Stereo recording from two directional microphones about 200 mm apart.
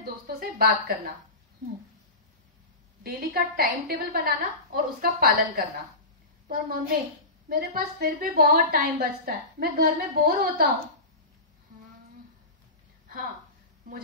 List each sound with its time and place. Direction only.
0.0 s a woman's voice: 50° right (ahead or behind)
3.0 s a woman's voice: 50° right (ahead or behind)
6.4 s a woman's voice: 45° right (ahead or behind)